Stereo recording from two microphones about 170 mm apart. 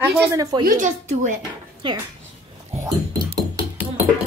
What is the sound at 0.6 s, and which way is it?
Speech, 50° right (ahead or behind).